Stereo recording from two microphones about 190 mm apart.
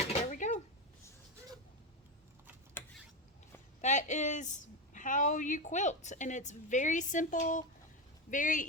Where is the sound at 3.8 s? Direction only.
40° left (ahead or behind).